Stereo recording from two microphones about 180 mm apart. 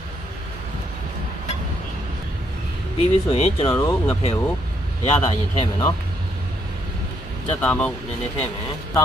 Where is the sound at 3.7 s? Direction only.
15° left (ahead or behind).